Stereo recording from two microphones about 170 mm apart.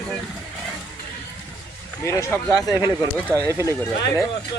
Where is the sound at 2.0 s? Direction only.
15° left (ahead or behind).